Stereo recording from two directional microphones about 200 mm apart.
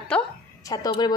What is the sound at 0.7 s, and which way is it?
Speech, 20° left (ahead or behind).